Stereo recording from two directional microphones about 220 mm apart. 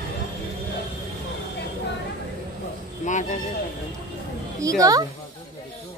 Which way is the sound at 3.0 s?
35° left (ahead or behind).